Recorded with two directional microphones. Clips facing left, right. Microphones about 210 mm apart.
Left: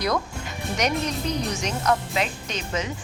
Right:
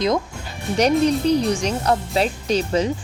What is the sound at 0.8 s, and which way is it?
Speech, 30° right (ahead or behind).